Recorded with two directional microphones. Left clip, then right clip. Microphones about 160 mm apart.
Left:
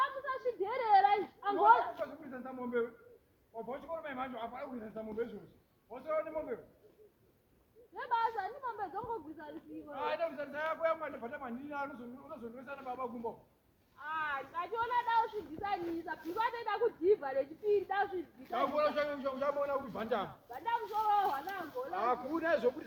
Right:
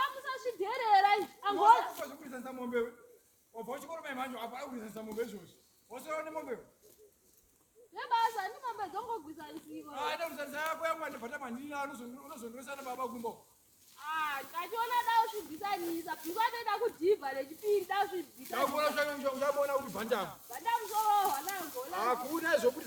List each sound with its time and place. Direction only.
0.0 s a sound: 35° right (ahead or behind)
2.0 s a sound: 10° right (ahead or behind)
3.7 s speech: 10° right (ahead or behind)
7.9 s speech: 35° right (ahead or behind)
9.9 s a man's voice: 5° right (ahead or behind)
14.0 s a sound: 35° right (ahead or behind)
15.6 s speech: 45° right (ahead or behind)
17.8 s speech: 35° right (ahead or behind)
18.5 s a man's voice: 5° left (ahead or behind)
20.5 s speech: 30° right (ahead or behind)
21.9 s a man's voice: 15° left (ahead or behind)